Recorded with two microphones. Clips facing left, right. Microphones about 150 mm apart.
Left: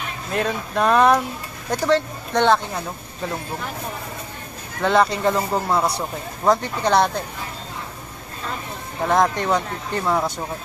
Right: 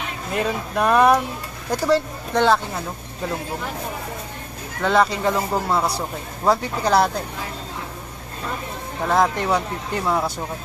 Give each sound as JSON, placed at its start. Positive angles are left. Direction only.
{"t": 0.3, "sound": "speech", "side_deg": -5}
{"t": 4.8, "sound": "speech", "side_deg": 0}
{"t": 9.0, "sound": "speech", "side_deg": 0}